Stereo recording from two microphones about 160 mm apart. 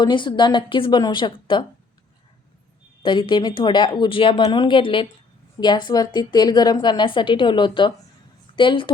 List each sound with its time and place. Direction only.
0.0 s a woman's voice: 30° left (ahead or behind)
3.0 s a woman's voice: 30° left (ahead or behind)